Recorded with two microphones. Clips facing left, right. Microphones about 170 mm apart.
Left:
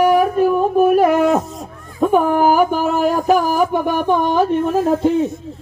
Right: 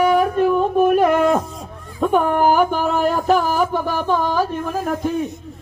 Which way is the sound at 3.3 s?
15° left (ahead or behind).